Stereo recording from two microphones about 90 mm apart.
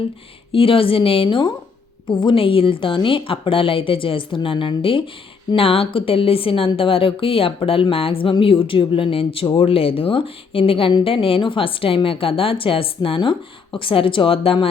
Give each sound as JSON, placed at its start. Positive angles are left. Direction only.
{"t": 0.5, "sound": "a woman's voice", "side_deg": 90}
{"t": 2.0, "sound": "a woman's voice", "side_deg": 75}
{"t": 5.5, "sound": "a woman's voice", "side_deg": 90}